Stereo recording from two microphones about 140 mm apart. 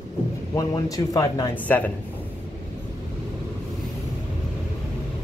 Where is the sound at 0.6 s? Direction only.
25° left (ahead or behind).